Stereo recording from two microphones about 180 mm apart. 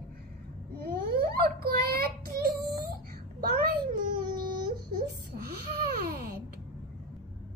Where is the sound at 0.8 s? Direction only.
60° right (ahead or behind).